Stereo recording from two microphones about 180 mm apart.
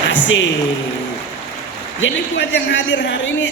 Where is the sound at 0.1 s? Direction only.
90° left.